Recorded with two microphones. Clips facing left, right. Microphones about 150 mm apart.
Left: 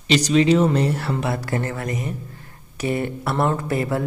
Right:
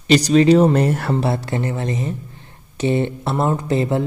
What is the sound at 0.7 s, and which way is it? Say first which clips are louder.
Speech: right 3 dB; 50° right (ahead or behind).